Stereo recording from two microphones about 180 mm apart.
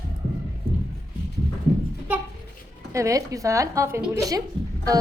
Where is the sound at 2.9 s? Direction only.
15° right (ahead or behind).